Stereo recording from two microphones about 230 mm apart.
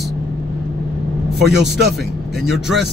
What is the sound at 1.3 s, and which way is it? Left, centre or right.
Speech, centre.